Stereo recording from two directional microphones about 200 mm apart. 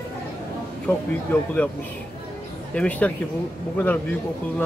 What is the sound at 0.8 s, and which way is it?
Speech, 5° left (ahead or behind).